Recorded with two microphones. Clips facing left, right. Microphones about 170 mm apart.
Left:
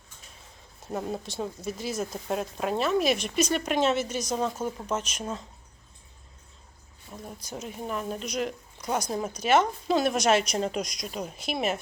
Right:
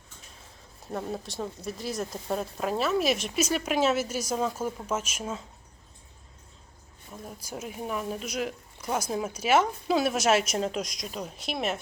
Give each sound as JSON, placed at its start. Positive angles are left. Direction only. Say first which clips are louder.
{"t": 0.9, "sound": "speech", "louder": "left 1 dB", "side_deg": 0}
{"t": 7.1, "sound": "speech", "louder": "even", "side_deg": -5}